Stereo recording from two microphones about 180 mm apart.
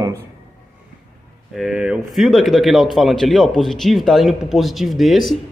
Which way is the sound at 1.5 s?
5° right (ahead or behind).